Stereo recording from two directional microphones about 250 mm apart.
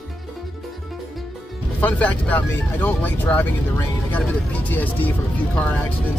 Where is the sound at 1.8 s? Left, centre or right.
Centre.